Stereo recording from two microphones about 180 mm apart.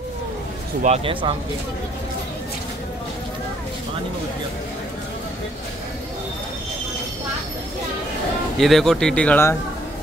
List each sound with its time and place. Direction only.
0.8 s speech: 35° right (ahead or behind)
8.5 s speech: centre (ahead or behind)